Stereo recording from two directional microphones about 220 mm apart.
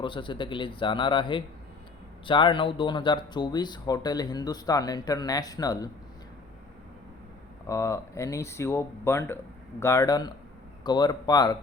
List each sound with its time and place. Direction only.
0.0 s a man's voice: 20° left (ahead or behind)
7.7 s a man's voice: 15° left (ahead or behind)